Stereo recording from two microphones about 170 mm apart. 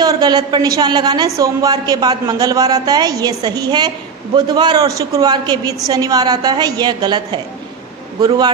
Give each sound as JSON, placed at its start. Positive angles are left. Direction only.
{"t": 0.0, "sound": "a woman's voice", "side_deg": -25}